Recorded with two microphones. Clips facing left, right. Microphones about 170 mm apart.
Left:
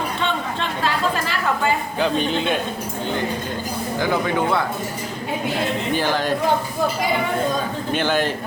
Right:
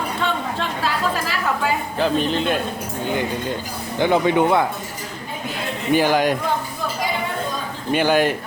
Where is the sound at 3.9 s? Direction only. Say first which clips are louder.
Right 5 dB; 20° right (ahead or behind).